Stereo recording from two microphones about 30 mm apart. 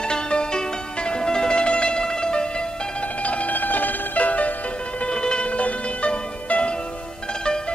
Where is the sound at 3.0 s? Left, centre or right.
Left.